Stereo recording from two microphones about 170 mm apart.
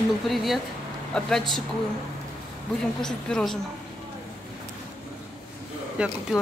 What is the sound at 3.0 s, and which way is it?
Speech, 5° left (ahead or behind).